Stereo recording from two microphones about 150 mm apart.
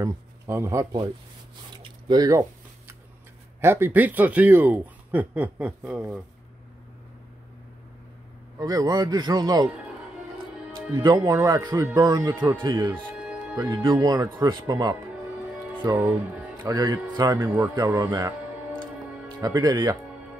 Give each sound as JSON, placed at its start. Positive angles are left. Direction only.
{"t": 0.0, "sound": "speech", "side_deg": -20}
{"t": 1.7, "sound": "a sound", "side_deg": -30}
{"t": 3.6, "sound": "speech", "side_deg": -15}
{"t": 8.5, "sound": "speech", "side_deg": -25}
{"t": 11.0, "sound": "speech", "side_deg": -25}
{"t": 12.3, "sound": "speech", "side_deg": -15}
{"t": 12.6, "sound": "speech", "side_deg": -30}
{"t": 13.2, "sound": "music", "side_deg": -5}
{"t": 13.6, "sound": "speech", "side_deg": -25}
{"t": 16.0, "sound": "speech", "side_deg": -10}
{"t": 16.6, "sound": "speech", "side_deg": -30}
{"t": 19.4, "sound": "speech", "side_deg": -30}